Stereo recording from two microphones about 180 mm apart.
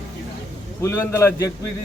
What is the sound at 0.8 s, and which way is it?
Speech, 15° left (ahead or behind).